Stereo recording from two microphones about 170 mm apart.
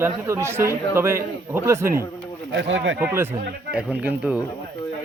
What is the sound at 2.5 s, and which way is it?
Speech, 90° right.